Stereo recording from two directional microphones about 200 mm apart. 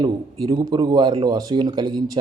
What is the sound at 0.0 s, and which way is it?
Speech, 20° right (ahead or behind).